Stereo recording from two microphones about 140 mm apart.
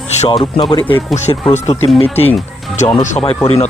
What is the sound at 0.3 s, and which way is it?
Speech, 35° left (ahead or behind).